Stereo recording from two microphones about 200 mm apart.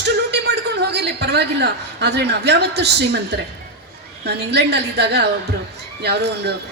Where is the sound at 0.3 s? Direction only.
55° right (ahead or behind).